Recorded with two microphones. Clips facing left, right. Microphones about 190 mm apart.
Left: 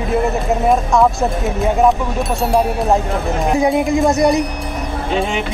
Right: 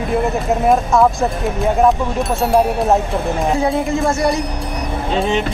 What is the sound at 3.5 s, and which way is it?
Speech, 15° left (ahead or behind).